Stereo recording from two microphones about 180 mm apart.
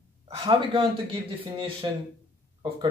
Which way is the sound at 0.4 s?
30° right (ahead or behind).